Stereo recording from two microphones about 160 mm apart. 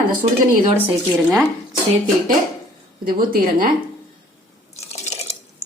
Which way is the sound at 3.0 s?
65° right (ahead or behind).